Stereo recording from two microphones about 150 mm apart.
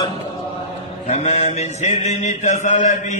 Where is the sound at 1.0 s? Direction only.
50° left (ahead or behind).